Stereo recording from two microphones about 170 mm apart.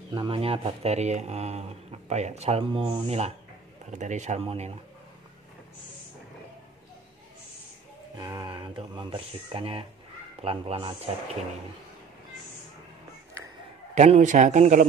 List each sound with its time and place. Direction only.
0.1 s a man's voice: 30° right (ahead or behind)
8.2 s speech: 25° right (ahead or behind)
13.9 s a man's voice: 45° right (ahead or behind)